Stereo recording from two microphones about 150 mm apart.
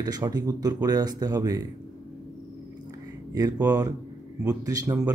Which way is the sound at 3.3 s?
25° right (ahead or behind).